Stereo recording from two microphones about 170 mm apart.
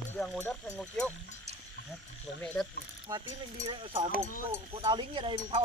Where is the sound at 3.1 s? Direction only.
25° right (ahead or behind).